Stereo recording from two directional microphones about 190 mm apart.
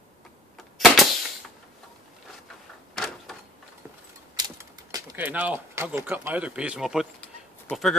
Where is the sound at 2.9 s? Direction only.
Centre (ahead or behind).